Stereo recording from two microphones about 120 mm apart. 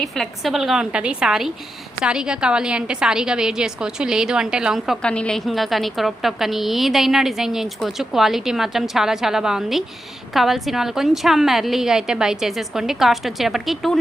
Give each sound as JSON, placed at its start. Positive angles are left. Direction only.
{"t": 0.0, "sound": "a woman's voice", "side_deg": 0}
{"t": 5.0, "sound": "a woman's voice", "side_deg": 10}